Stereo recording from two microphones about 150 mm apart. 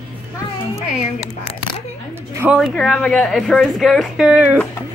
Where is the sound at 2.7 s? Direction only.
5° left (ahead or behind).